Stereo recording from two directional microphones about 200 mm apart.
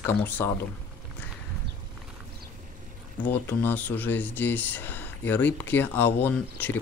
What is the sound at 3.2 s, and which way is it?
Speech, 10° left (ahead or behind).